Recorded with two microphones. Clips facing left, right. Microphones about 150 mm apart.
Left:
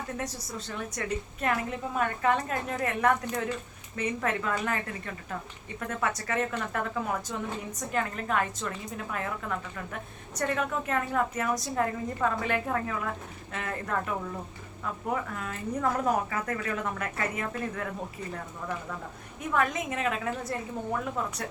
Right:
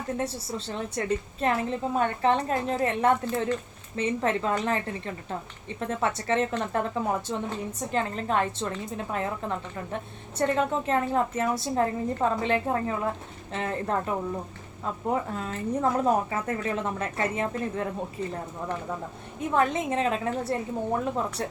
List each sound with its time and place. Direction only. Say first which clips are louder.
0.2 s a woman's voice: right 5 dB; 30° right (ahead or behind)
19.5 s a woman's voice: right 4 dB; 30° right (ahead or behind)